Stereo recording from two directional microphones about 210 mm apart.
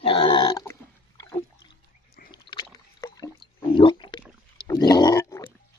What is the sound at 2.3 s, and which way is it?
Rowboat, 20° left (ahead or behind).